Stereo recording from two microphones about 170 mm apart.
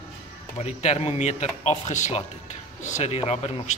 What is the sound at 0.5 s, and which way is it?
Speech, 40° left (ahead or behind).